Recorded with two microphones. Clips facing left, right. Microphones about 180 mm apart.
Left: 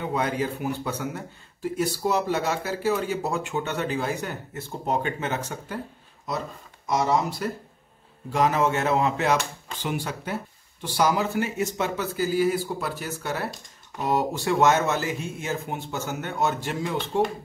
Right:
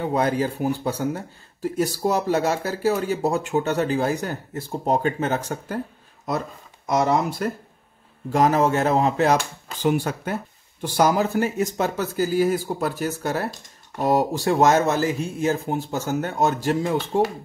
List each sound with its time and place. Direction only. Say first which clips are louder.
0.0 s speech: right 4 dB; 35° right (ahead or behind)
6.9 s speech: right 3 dB; 55° right (ahead or behind)
8.3 s speech: right 4 dB; 40° right (ahead or behind)
9.8 s speech: right 7 dB; 50° right (ahead or behind)